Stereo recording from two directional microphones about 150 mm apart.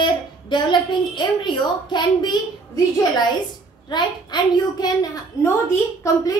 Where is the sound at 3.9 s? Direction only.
30° left (ahead or behind).